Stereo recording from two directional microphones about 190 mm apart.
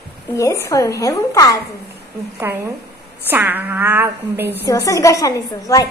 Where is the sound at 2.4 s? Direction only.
15° right (ahead or behind).